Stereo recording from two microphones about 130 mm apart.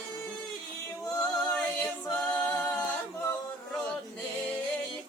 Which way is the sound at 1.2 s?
10° left (ahead or behind).